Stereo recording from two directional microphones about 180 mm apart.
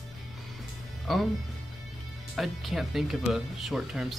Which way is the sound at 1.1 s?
Centre (ahead or behind).